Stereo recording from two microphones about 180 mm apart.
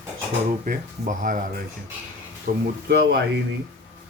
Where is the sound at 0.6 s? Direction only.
45° right (ahead or behind).